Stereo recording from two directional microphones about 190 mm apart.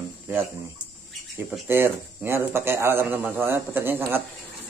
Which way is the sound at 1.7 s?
10° right (ahead or behind).